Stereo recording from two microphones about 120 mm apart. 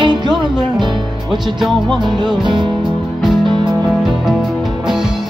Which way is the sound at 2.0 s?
40° right (ahead or behind).